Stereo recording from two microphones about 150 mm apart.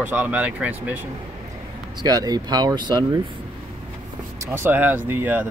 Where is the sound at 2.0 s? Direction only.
25° right (ahead or behind).